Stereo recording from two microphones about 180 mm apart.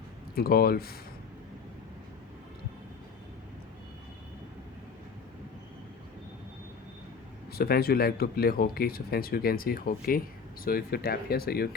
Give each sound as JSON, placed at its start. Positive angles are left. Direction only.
{"t": 0.3, "sound": "speech", "side_deg": 60}
{"t": 7.5, "sound": "speech", "side_deg": 60}